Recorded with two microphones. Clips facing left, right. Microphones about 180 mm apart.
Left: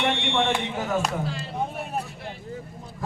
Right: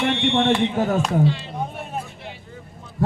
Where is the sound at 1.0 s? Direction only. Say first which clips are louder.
Right 8 dB; centre (ahead or behind).